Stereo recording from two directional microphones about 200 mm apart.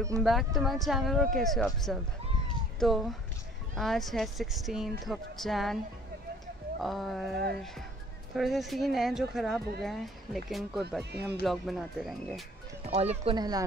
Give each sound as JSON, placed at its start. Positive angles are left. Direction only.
{"t": 0.2, "sound": "speech", "side_deg": 0}
{"t": 6.8, "sound": "speech", "side_deg": 0}
{"t": 12.8, "sound": "speech", "side_deg": -30}